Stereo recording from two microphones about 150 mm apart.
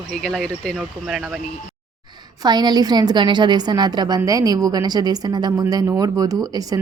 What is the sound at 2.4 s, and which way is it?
Speech, 25° right (ahead or behind).